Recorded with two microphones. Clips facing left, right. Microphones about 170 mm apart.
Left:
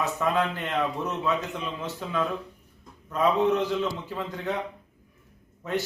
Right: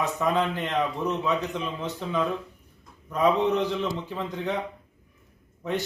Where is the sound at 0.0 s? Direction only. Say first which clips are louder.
Right 1 dB; 15° right (ahead or behind).